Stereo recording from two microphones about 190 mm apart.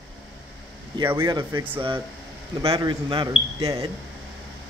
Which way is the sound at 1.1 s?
25° right (ahead or behind).